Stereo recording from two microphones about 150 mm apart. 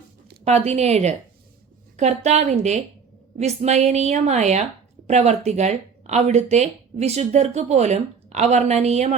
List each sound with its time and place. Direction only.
0.4 s speech: 45° right (ahead or behind)